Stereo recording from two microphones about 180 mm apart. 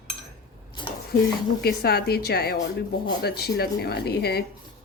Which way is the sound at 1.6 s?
60° left (ahead or behind).